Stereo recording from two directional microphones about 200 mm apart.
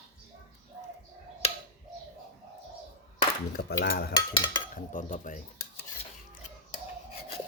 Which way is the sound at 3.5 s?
50° left (ahead or behind).